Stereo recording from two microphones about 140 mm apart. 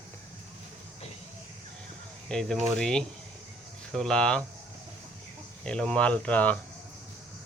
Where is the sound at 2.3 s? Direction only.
5° left (ahead or behind).